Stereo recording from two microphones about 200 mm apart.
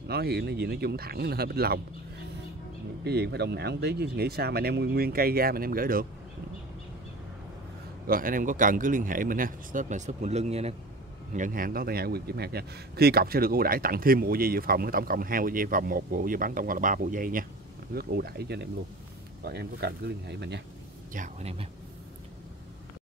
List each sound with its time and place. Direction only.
0.1 s a man's voice: 55° right (ahead or behind)
3.0 s a man's voice: 55° right (ahead or behind)
8.1 s a man's voice: 45° right (ahead or behind)
21.1 s speech: 35° right (ahead or behind)